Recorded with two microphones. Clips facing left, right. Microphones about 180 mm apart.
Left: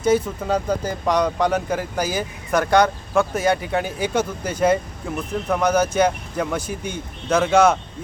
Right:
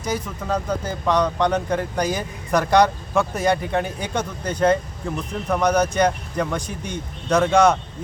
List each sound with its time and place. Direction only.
0.4 s speech: 10° left (ahead or behind)